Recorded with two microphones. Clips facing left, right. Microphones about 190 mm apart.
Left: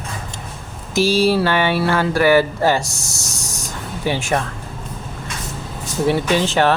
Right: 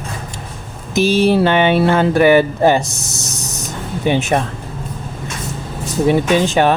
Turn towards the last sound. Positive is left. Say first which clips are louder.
# right 3 dB
turn(degrees=-15)  # may be behind; listen again after turning